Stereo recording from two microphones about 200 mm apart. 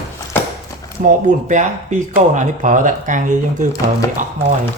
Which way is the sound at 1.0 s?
40° right (ahead or behind).